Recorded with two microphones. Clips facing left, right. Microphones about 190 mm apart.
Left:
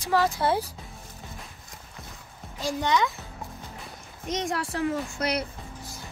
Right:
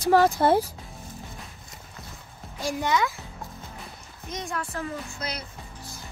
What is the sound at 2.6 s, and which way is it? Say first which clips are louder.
Speech: even; 10° right (ahead or behind).